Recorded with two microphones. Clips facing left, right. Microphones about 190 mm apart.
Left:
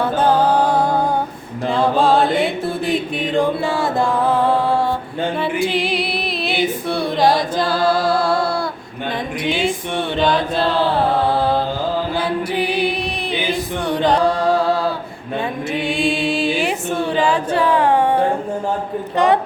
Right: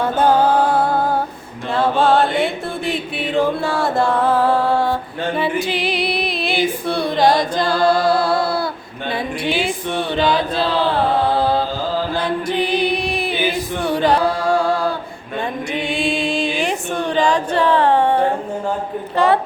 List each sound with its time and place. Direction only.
0.0 s music: 10° right (ahead or behind)
1.7 s mantra: centre (ahead or behind)
5.6 s female singing: centre (ahead or behind)
9.4 s chant: 5° right (ahead or behind)
11.3 s music: centre (ahead or behind)
13.8 s a capella: 5° right (ahead or behind)
15.7 s female singing: centre (ahead or behind)
19.1 s a woman's voice: 20° left (ahead or behind)